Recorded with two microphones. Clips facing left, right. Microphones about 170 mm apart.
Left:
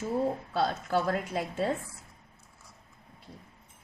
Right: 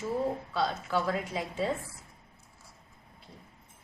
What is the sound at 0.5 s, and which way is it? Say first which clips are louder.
A woman's voice: left 3 dB; 45° left (ahead or behind).